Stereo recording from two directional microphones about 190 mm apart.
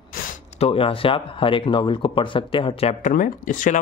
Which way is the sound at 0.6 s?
30° left (ahead or behind).